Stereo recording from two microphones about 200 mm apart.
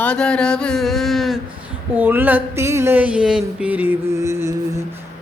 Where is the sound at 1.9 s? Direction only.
10° right (ahead or behind).